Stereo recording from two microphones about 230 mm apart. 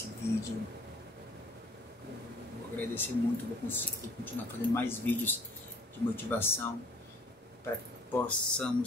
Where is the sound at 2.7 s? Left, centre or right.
Centre.